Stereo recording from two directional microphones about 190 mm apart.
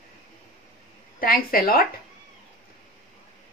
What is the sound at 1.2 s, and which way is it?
Speech, 50° left (ahead or behind).